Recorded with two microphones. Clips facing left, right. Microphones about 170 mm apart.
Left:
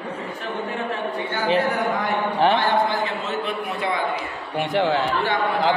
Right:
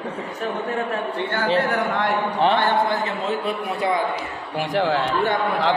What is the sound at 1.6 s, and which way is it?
Speech, 70° right (ahead or behind).